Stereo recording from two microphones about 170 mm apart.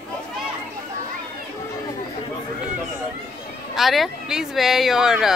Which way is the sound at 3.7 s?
Centre (ahead or behind).